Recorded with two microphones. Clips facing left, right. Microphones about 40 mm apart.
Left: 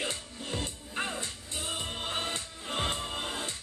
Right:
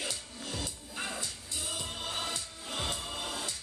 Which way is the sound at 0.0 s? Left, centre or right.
Left.